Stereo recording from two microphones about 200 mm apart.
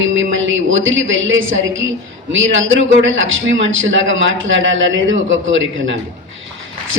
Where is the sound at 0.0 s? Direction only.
70° right (ahead or behind).